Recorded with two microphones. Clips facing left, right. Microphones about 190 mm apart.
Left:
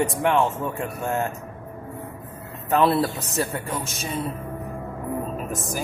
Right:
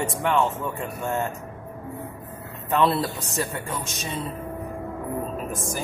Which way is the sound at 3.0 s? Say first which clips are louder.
Left 3 dB; 35° left (ahead or behind).